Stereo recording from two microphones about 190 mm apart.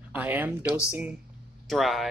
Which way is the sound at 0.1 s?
10° right (ahead or behind).